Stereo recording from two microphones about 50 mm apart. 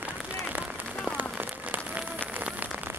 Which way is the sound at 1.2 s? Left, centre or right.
Right.